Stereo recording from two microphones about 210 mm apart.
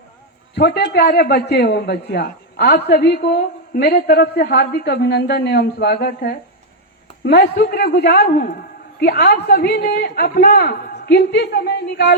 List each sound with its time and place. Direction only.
0.5 s a man's voice: 50° left (ahead or behind)